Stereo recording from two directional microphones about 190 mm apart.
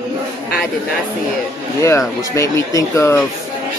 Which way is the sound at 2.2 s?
15° left (ahead or behind).